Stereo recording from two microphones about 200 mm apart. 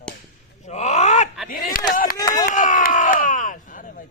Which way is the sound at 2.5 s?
40° left (ahead or behind).